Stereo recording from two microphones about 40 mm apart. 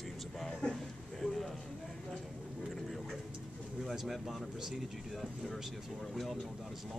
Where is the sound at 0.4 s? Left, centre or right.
Centre.